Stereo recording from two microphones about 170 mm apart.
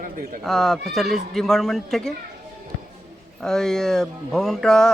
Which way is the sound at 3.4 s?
Centre (ahead or behind).